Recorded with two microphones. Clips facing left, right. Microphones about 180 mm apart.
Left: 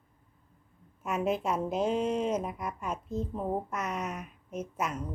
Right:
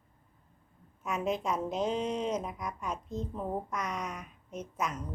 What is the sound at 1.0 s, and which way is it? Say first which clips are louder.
Speech: left 2 dB; 5° left (ahead or behind).